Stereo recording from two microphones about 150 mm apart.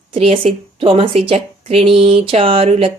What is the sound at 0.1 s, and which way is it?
Speech, 40° right (ahead or behind).